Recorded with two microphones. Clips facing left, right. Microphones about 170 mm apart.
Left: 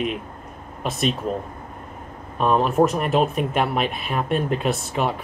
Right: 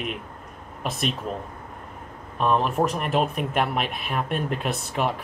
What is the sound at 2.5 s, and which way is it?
Speech, 40° left (ahead or behind).